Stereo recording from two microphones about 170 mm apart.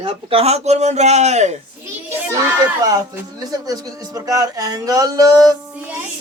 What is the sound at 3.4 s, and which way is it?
Speech, 20° right (ahead or behind).